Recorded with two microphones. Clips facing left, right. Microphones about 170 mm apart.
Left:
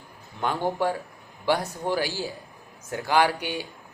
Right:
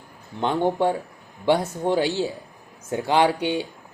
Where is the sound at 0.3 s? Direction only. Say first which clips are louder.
Right 4 dB; 20° right (ahead or behind).